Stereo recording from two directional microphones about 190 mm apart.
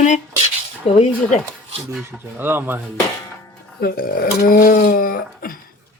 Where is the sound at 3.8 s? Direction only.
50° left (ahead or behind).